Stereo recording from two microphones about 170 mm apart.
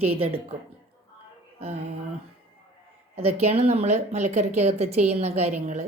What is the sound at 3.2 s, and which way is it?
A woman's voice, 35° right (ahead or behind).